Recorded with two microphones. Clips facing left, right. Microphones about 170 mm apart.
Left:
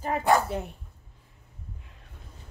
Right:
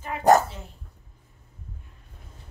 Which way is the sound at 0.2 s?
45° right (ahead or behind).